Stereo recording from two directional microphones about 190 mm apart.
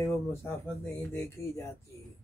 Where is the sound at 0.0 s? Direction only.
15° left (ahead or behind).